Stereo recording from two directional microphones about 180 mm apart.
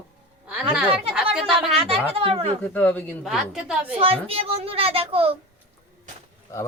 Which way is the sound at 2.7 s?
10° left (ahead or behind).